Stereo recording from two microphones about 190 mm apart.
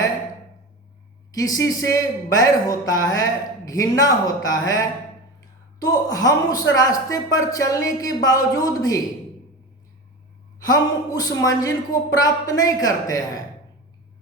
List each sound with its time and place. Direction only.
1.3 s speech: 20° left (ahead or behind)
10.7 s speech: 20° left (ahead or behind)